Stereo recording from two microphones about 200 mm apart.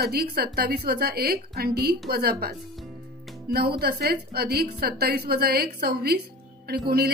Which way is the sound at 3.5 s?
50° right (ahead or behind).